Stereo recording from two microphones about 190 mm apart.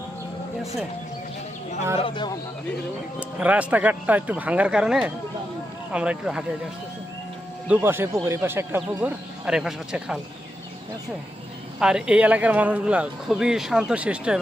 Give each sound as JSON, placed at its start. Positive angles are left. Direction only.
{"t": 2.0, "sound": "speech", "side_deg": 25}
{"t": 3.2, "sound": "speech", "side_deg": -5}
{"t": 7.7, "sound": "speech", "side_deg": -10}
{"t": 11.8, "sound": "speech", "side_deg": -5}